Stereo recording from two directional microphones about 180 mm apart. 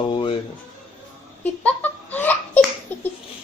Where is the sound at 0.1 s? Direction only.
30° left (ahead or behind).